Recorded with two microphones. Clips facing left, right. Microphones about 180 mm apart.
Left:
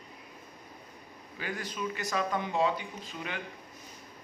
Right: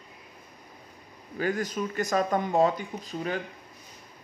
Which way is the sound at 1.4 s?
45° right (ahead or behind).